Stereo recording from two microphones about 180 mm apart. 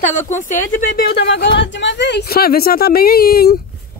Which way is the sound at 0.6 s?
50° left (ahead or behind).